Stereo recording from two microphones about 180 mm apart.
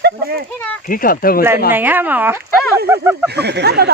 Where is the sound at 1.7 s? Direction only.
10° right (ahead or behind).